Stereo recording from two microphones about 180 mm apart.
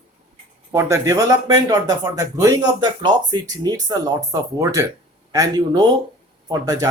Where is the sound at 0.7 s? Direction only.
15° right (ahead or behind).